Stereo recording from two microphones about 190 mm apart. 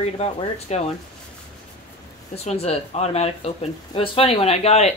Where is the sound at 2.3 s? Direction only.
35° left (ahead or behind).